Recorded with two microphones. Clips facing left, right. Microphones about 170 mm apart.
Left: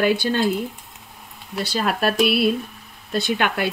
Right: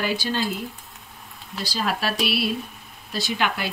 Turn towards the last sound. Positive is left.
turn(degrees=55)  # may be behind; listen again after turning